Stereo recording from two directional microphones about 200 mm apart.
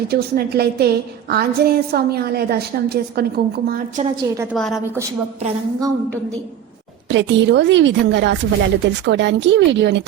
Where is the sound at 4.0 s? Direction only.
35° right (ahead or behind).